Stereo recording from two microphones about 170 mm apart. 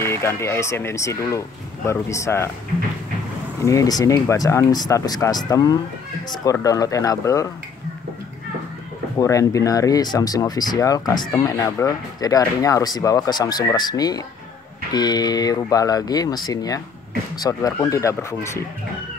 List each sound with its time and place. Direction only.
0.0 s speech: 15° left (ahead or behind)
3.6 s speech: 20° left (ahead or behind)
9.2 s speech: 20° left (ahead or behind)